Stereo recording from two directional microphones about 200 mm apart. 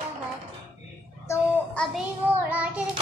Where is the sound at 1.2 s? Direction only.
5° left (ahead or behind).